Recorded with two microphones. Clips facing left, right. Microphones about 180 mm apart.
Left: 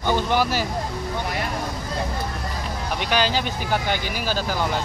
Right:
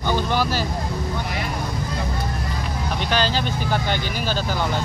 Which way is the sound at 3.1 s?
15° left (ahead or behind).